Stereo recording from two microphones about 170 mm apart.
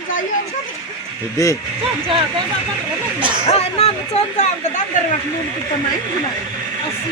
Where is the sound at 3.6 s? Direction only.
40° left (ahead or behind).